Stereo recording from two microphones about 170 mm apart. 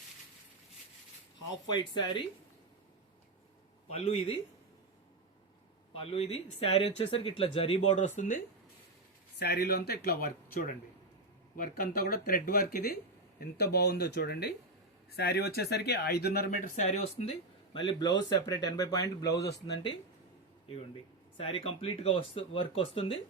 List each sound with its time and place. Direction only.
1.6 s speech: 25° left (ahead or behind)
3.8 s speech: 40° left (ahead or behind)
5.9 s speech: 35° left (ahead or behind)
9.4 s speech: 65° left (ahead or behind); by 17.3 s 40° left (ahead or behind)
18.3 s speech: 25° left (ahead or behind)
19.3 s speech: 75° left (ahead or behind)
21.3 s speech: 35° left (ahead or behind)